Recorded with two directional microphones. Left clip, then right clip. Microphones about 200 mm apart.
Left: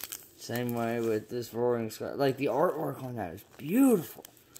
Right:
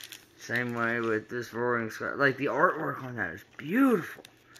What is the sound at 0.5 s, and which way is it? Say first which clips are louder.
Speech: right 3 dB; 20° left (ahead or behind).